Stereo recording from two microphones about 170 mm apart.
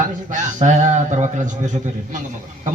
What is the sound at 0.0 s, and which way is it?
A man's voice, 50° right (ahead or behind).